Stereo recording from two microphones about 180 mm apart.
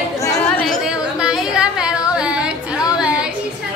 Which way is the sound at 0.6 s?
5° right (ahead or behind).